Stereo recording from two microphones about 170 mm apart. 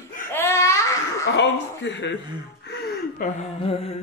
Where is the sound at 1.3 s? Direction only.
90° left.